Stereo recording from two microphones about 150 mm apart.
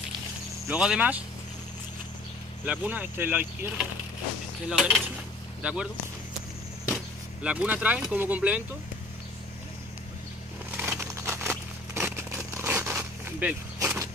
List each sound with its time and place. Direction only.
0.7 s speech: 5° right (ahead or behind)
2.6 s speech: 10° right (ahead or behind)
4.6 s cutlery: centre (ahead or behind)
5.6 s speech: 5° right (ahead or behind)
7.4 s speech: 10° right (ahead or behind)
10.8 s a sound: 15° right (ahead or behind)
13.7 s vehicle: 20° right (ahead or behind)